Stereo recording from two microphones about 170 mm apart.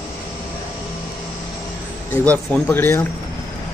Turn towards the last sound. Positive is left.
turn(degrees=10)  # may be behind; listen again after turning